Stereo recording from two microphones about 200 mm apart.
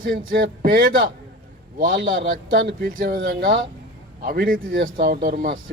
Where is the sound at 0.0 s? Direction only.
45° right (ahead or behind).